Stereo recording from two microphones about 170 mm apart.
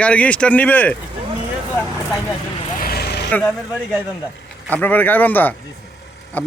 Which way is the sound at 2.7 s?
60° left (ahead or behind).